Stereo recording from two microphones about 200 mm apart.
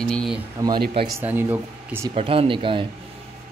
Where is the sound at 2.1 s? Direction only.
30° right (ahead or behind).